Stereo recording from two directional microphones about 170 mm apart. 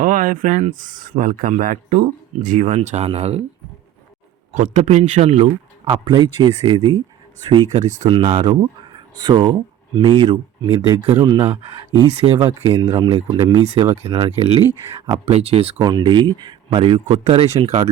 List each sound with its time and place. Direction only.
0.0 s speech: 50° right (ahead or behind)
4.5 s speech: 45° right (ahead or behind); by 7.7 s 25° right (ahead or behind)
7.7 s speech: 45° right (ahead or behind)
8.0 s speech: 25° right (ahead or behind)
12.6 s speech: 30° right (ahead or behind)
15.8 s speech: 25° right (ahead or behind)